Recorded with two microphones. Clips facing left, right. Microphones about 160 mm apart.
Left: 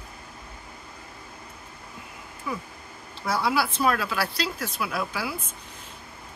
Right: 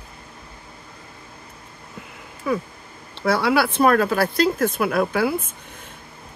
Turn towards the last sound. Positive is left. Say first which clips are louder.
# right 10 dB
turn(degrees=-55)  # may be behind; listen again after turning